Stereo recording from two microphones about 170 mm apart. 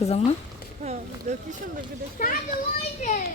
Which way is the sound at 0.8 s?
40° right (ahead or behind).